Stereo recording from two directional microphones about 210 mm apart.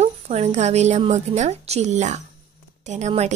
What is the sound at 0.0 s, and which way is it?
A woman's voice, 30° right (ahead or behind).